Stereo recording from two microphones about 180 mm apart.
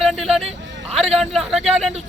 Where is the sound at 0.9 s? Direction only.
35° right (ahead or behind).